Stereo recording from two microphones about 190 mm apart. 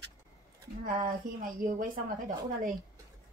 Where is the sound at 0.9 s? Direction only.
45° right (ahead or behind).